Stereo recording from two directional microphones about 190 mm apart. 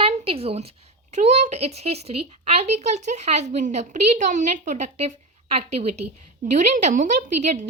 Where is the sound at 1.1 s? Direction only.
35° right (ahead or behind).